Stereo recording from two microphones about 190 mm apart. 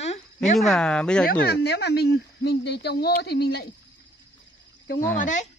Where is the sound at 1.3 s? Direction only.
55° left (ahead or behind).